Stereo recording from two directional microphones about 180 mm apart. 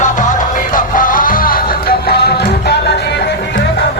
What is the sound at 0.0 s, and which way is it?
Music, 45° left (ahead or behind).